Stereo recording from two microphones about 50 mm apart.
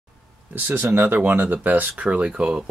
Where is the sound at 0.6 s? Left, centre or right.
Right.